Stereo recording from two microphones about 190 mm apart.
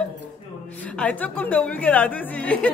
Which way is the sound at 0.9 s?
5° left (ahead or behind).